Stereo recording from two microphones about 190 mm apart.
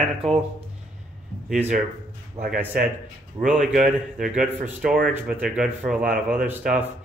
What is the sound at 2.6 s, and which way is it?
Speech, 10° right (ahead or behind).